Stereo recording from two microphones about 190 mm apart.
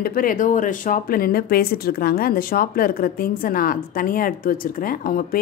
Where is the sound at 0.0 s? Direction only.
50° left (ahead or behind).